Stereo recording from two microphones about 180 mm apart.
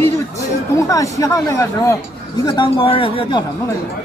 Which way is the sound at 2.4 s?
25° left (ahead or behind).